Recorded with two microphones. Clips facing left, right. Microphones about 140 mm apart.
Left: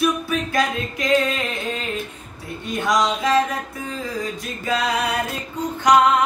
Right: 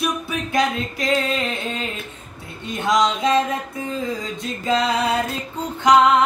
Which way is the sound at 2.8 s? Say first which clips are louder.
Right 1 dB; 25° right (ahead or behind).